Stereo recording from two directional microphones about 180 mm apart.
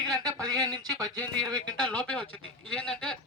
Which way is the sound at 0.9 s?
20° right (ahead or behind).